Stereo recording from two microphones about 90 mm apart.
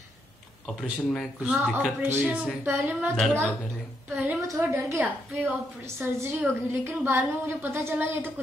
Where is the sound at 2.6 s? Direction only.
30° right (ahead or behind).